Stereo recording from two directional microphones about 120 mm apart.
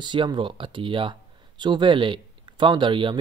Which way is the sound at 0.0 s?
40° right (ahead or behind).